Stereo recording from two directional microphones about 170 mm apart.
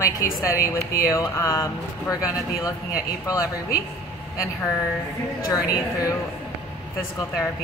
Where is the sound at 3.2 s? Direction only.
20° left (ahead or behind).